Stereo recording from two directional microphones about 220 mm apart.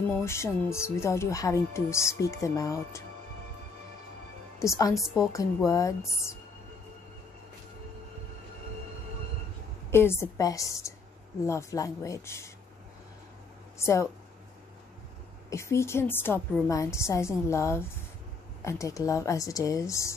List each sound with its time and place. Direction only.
0.2 s speech: 10° left (ahead or behind)
4.6 s speech: 15° left (ahead or behind)
9.8 s speech: 10° left (ahead or behind)
13.7 s speech: 10° left (ahead or behind)
15.5 s speech: 10° left (ahead or behind)